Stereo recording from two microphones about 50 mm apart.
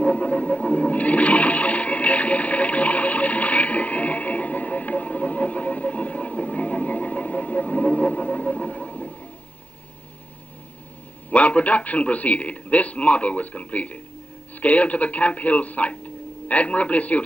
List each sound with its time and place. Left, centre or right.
0.0 s toilet flush: left
11.2 s a man's voice: left